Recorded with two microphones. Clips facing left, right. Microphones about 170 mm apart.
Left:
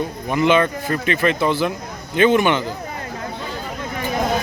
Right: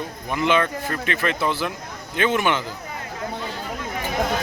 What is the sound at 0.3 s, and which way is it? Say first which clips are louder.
Speech: left 4 dB; centre (ahead or behind).